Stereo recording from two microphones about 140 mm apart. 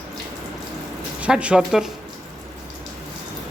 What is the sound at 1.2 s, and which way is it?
Speech, 10° right (ahead or behind).